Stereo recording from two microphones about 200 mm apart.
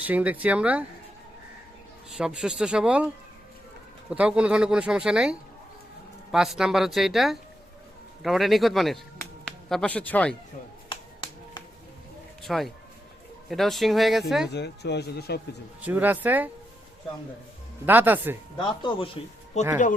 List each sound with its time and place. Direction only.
0.0 s speech: 5° right (ahead or behind)
2.0 s speech: 5° right (ahead or behind)
4.1 s speech: 5° right (ahead or behind)
10.8 s finger snapping: 25° left (ahead or behind)
12.4 s speech: centre (ahead or behind)
14.5 s speech: 55° left (ahead or behind)
15.8 s speech: 10° right (ahead or behind)
17.8 s speech: 10° right (ahead or behind)
18.5 s speech: 25° left (ahead or behind)
19.6 s speech: 35° left (ahead or behind)